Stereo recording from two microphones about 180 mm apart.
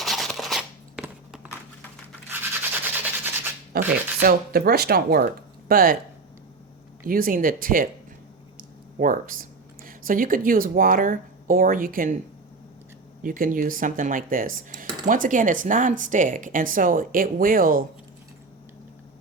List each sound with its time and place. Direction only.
0.0 s a sound: centre (ahead or behind)
2.9 s rub: 10° right (ahead or behind)
3.7 s a sound: 55° right (ahead or behind)
4.2 s speech: 55° right (ahead or behind)
7.0 s speech: 50° right (ahead or behind)
9.0 s speech: 50° right (ahead or behind)
13.2 s speech: 50° right (ahead or behind)